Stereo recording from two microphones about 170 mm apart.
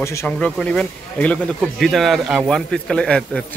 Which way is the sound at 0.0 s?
15° left (ahead or behind).